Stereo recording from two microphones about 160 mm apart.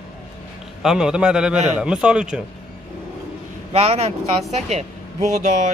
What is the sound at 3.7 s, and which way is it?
Speech, 40° right (ahead or behind).